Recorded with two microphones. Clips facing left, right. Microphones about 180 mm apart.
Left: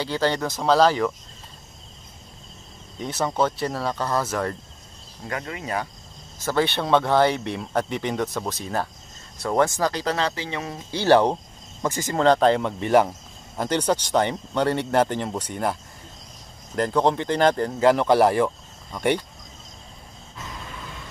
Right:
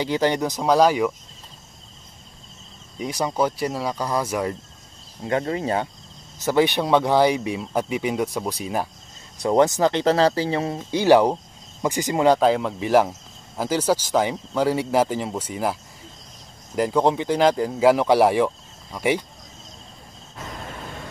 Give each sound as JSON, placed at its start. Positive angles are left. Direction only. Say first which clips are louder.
{"t": 0.0, "sound": "speech", "louder": "right 3 dB", "side_deg": -15}
{"t": 3.0, "sound": "speech", "louder": "right 1 dB", "side_deg": -10}
{"t": 5.2, "sound": "speech", "louder": "right 8 dB", "side_deg": -30}
{"t": 6.4, "sound": "speech", "louder": "right 4 dB", "side_deg": -15}
{"t": 10.9, "sound": "speech", "louder": "right 2 dB", "side_deg": -15}